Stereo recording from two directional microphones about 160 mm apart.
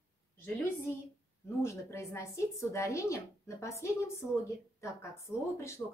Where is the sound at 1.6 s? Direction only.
15° left (ahead or behind).